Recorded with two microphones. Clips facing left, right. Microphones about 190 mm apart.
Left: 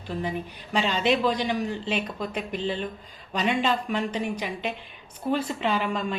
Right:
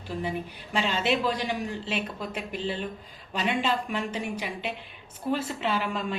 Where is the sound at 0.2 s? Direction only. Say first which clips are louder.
Even; 5° right (ahead or behind).